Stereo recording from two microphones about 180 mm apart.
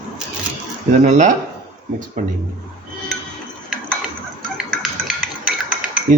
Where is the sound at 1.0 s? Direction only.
45° right (ahead or behind).